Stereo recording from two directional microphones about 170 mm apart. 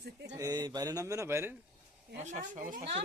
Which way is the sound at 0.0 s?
75° right (ahead or behind).